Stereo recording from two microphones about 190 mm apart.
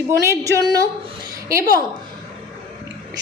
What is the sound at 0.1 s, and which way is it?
Speech, 15° right (ahead or behind).